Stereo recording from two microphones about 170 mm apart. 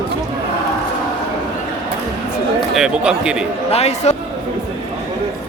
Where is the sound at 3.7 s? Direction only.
40° left (ahead or behind).